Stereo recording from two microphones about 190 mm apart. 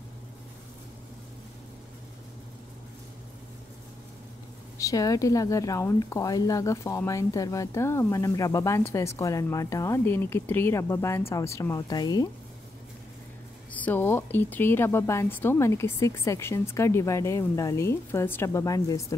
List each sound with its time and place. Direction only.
4.7 s a woman's voice: 15° left (ahead or behind)
13.7 s a woman's voice: 10° left (ahead or behind)